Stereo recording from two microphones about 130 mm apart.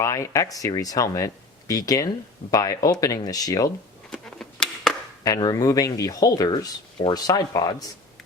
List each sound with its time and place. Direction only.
0.0 s speech: 25° left (ahead or behind)
4.1 s a sound: 5° left (ahead or behind)
5.2 s speech: 30° left (ahead or behind)